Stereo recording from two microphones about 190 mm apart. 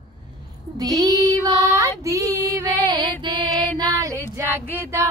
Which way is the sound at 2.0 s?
15° right (ahead or behind).